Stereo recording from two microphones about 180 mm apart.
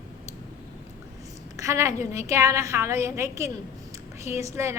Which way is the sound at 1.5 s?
15° right (ahead or behind).